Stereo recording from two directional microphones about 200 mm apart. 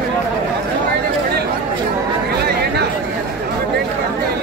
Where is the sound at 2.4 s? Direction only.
55° right (ahead or behind).